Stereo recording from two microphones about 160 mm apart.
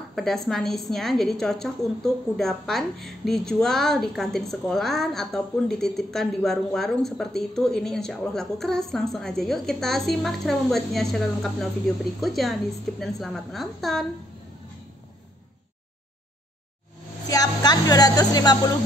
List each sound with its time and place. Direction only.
0.1 s a woman's voice: centre (ahead or behind)
17.3 s speech: 25° left (ahead or behind)